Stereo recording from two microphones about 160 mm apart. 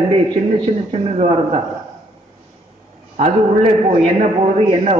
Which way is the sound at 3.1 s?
45° right (ahead or behind).